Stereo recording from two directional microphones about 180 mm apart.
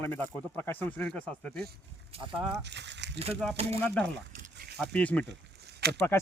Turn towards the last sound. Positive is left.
turn(degrees=-65)  # may be behind; listen again after turning